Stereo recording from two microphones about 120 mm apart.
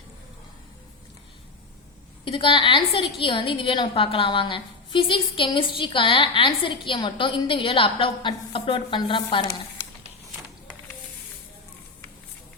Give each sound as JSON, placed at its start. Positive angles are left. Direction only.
{"t": 2.2, "sound": "a woman's voice", "side_deg": 45}